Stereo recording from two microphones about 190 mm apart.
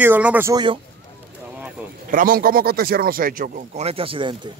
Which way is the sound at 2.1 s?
50° right (ahead or behind).